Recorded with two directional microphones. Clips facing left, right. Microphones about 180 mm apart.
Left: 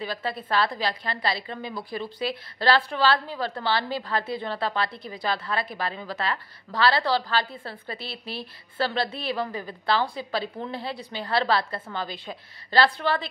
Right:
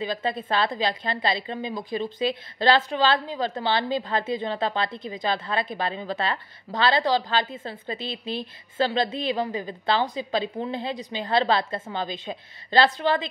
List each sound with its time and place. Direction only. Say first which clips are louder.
0.0 s a woman's voice: right 3 dB; 20° right (ahead or behind)